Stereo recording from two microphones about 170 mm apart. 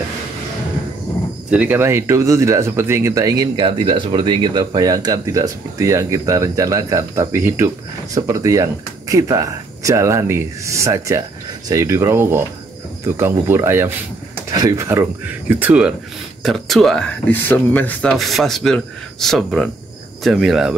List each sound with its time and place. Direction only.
1.5 s speech: 10° right (ahead or behind)